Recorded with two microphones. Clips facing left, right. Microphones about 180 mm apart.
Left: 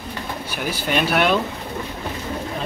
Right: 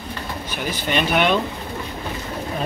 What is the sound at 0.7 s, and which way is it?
Speech, 5° left (ahead or behind).